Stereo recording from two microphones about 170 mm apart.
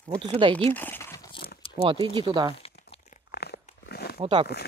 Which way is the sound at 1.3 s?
30° left (ahead or behind).